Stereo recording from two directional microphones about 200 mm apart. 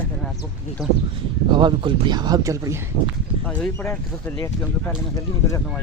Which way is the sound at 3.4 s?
5° left (ahead or behind).